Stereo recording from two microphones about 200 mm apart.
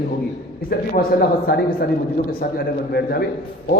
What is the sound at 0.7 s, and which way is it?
A man's voice, 50° left (ahead or behind).